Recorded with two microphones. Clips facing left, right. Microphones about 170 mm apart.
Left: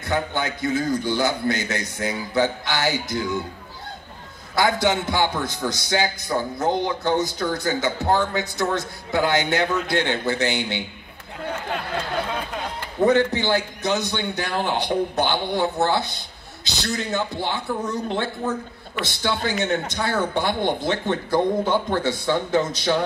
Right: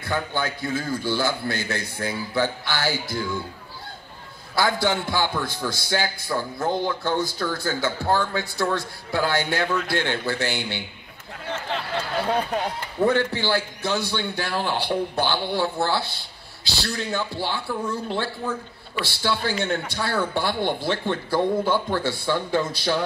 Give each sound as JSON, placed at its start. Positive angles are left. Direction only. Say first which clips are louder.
{"t": 0.0, "sound": "a man's voice", "louder": "left 2 dB", "side_deg": 20}
{"t": 4.6, "sound": "a man's voice", "louder": "left 2 dB", "side_deg": 20}
{"t": 13.0, "sound": "a man's voice", "louder": "left 3 dB", "side_deg": 20}